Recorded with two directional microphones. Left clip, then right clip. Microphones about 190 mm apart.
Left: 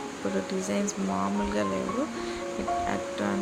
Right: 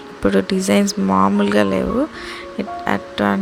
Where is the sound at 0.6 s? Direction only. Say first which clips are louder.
Right 12 dB; 50° right (ahead or behind).